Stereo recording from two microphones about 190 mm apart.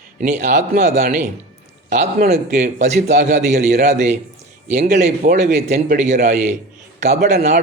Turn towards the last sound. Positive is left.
turn(degrees=-35)  # may be behind; listen again after turning